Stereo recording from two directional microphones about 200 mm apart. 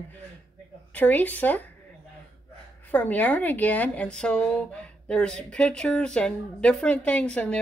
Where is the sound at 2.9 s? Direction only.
10° left (ahead or behind).